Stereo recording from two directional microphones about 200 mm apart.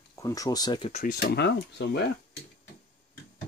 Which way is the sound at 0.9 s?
50° left (ahead or behind).